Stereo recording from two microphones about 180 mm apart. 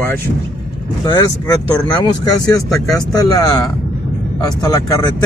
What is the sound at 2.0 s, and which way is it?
Speech, 20° left (ahead or behind).